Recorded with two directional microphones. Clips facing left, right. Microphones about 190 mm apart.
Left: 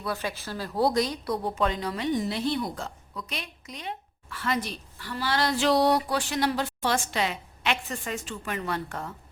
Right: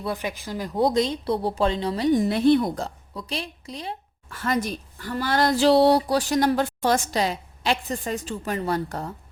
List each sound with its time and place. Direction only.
0.0 s a woman's voice: 20° right (ahead or behind)
2.1 s a woman's voice: 55° right (ahead or behind)
2.7 s a woman's voice: 35° right (ahead or behind)
5.6 s a woman's voice: 30° right (ahead or behind)